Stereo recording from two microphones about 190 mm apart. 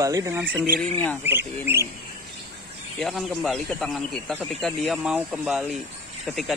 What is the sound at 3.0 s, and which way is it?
Speech, centre (ahead or behind).